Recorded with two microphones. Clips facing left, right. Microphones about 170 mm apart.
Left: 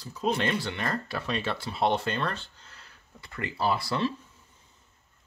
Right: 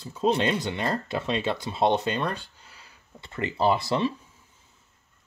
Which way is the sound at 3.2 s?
25° right (ahead or behind).